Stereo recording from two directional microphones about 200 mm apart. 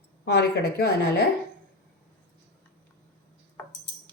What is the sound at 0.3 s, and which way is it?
Speech, 55° left (ahead or behind).